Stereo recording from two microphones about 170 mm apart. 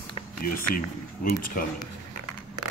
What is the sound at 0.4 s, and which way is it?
Speech, 55° left (ahead or behind).